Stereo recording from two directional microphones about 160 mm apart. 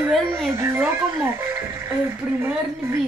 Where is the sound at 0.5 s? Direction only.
15° right (ahead or behind).